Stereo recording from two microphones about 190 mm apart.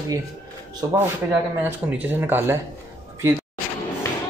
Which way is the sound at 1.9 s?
10° right (ahead or behind).